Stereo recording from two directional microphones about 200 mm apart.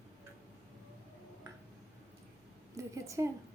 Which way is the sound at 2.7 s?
15° right (ahead or behind).